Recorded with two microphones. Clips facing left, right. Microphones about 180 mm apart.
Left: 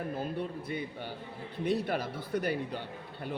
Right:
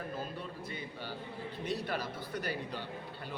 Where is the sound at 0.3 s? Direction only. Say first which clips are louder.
Left 7 dB; 60° left (ahead or behind).